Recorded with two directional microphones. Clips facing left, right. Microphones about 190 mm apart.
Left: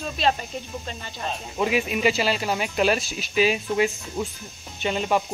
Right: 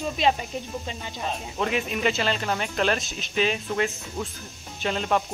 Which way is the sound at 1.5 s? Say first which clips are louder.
Left 4 dB; 10° left (ahead or behind).